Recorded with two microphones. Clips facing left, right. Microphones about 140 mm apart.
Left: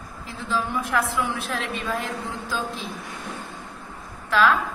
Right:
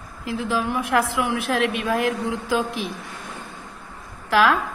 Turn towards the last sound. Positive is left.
turn(degrees=-70)  # may be behind; listen again after turning